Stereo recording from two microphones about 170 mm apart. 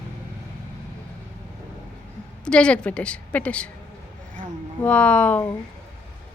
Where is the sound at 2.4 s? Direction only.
5° left (ahead or behind).